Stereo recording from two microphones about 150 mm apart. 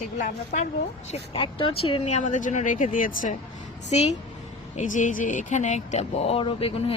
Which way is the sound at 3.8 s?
50° left (ahead or behind).